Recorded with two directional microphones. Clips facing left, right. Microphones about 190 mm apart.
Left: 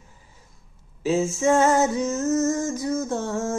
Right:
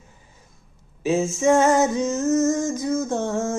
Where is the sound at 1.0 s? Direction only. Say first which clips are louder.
Right 2 dB; 20° right (ahead or behind).